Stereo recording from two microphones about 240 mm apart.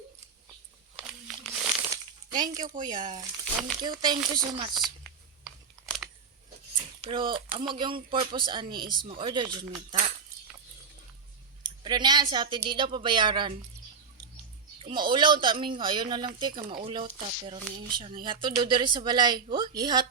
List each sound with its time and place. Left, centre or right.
0.9 s crumpling: centre
2.9 s speech: right
3.4 s speech: centre
3.8 s speech: centre
5.5 s a sound: centre
7.1 s speech: right
11.6 s a sound: centre
12.3 s speech: centre
14.8 s speech: right